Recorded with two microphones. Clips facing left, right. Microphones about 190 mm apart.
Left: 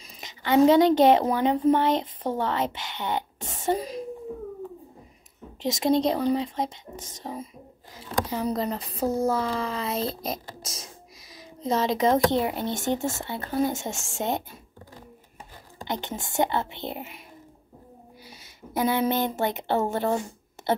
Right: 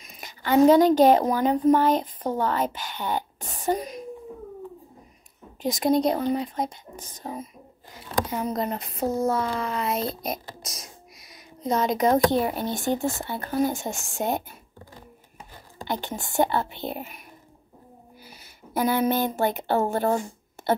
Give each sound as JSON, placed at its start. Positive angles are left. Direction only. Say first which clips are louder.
{"t": 0.2, "sound": "a woman's voice", "louder": "right 1 dB", "side_deg": 25}
{"t": 5.6, "sound": "speech", "louder": "right 1 dB", "side_deg": 25}
{"t": 15.8, "sound": "speech", "louder": "right 1 dB", "side_deg": 20}
{"t": 18.7, "sound": "speech", "louder": "right 1 dB", "side_deg": 25}